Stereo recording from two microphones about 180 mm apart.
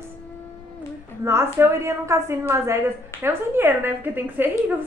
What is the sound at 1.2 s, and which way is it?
A woman's voice, 15° right (ahead or behind).